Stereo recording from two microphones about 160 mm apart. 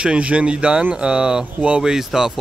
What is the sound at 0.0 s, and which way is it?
Speech, 5° right (ahead or behind).